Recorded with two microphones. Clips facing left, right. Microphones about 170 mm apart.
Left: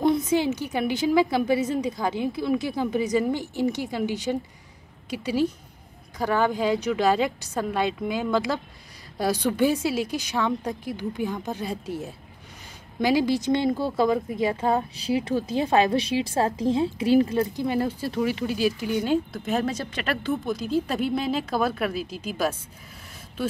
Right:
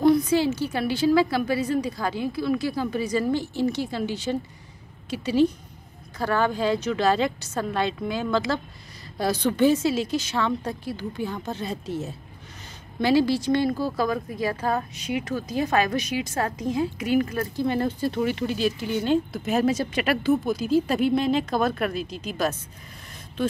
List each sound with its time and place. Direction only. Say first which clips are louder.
0.0 s a woman's voice: right 2 dB; 20° left (ahead or behind)
15.0 s a woman's voice: left 3 dB; 30° left (ahead or behind)
17.6 s a woman's voice: right 1 dB; 10° left (ahead or behind)
19.3 s speech: right 3 dB; 5° right (ahead or behind)